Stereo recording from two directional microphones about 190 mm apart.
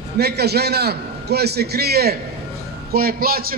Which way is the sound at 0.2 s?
60° right (ahead or behind).